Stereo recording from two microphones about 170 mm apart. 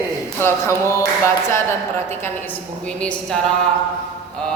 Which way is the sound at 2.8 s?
5° left (ahead or behind).